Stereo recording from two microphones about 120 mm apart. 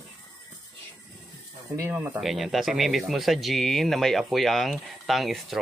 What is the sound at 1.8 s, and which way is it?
Speech, 20° right (ahead or behind).